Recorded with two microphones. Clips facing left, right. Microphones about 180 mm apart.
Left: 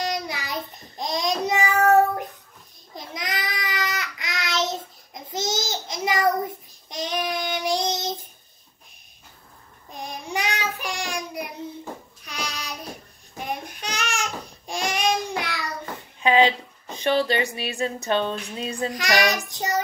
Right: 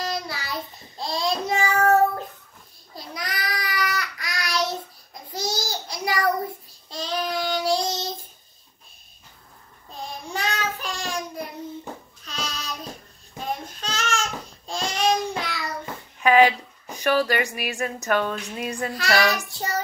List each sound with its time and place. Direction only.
0.0 s child singing: 20° left (ahead or behind)
9.9 s child singing: 15° left (ahead or behind)
13.4 s babbling: 15° left (ahead or behind)
15.9 s a sound: 20° left (ahead or behind)
18.8 s child singing: 15° left (ahead or behind)